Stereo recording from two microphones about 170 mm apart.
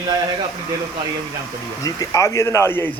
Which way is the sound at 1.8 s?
20° left (ahead or behind).